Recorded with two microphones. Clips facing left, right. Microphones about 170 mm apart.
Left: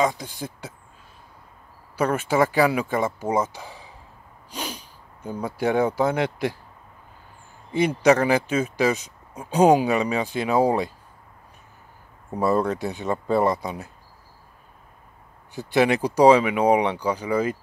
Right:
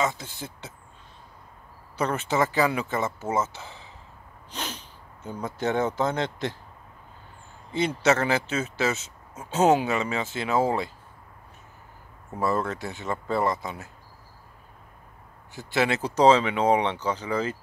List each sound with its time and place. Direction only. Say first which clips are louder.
0.0 s speech: left 4 dB; 15° left (ahead or behind)
2.0 s speech: left 4 dB; 10° left (ahead or behind)
7.7 s speech: left 5 dB; 15° left (ahead or behind)
12.3 s speech: left 5 dB; 15° left (ahead or behind)
15.7 s speech: left 5 dB; 15° left (ahead or behind)